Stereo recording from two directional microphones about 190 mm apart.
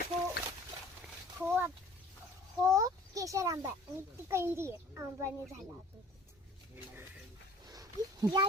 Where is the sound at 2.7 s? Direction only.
15° right (ahead or behind).